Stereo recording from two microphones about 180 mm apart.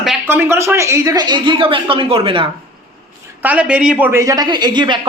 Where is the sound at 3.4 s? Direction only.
10° right (ahead or behind); by 5.1 s 25° right (ahead or behind).